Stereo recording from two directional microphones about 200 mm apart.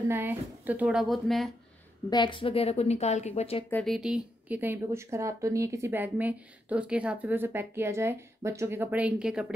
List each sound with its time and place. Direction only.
0.1 s a woman's voice: 10° right (ahead or behind)
2.0 s speech: 25° left (ahead or behind)
3.7 s speech: centre (ahead or behind)